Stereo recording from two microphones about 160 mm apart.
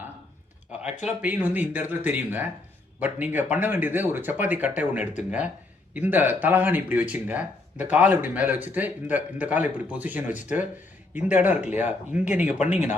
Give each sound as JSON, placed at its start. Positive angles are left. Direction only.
{"t": 1.0, "sound": "speech", "side_deg": -10}
{"t": 12.5, "sound": "speech", "side_deg": 50}